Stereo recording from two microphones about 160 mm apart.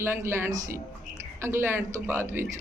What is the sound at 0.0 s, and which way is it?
A woman's voice, 15° right (ahead or behind).